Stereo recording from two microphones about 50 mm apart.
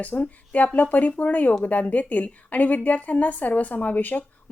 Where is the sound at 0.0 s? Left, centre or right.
Left.